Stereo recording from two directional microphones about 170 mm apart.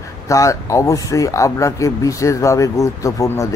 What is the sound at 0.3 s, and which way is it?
A man's voice, 20° left (ahead or behind).